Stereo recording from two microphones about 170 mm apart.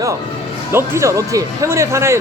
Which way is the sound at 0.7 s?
15° right (ahead or behind).